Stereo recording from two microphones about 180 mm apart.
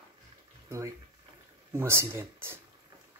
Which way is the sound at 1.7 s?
15° right (ahead or behind).